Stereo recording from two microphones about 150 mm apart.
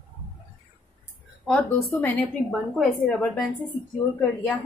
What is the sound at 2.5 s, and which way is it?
Speech, centre (ahead or behind).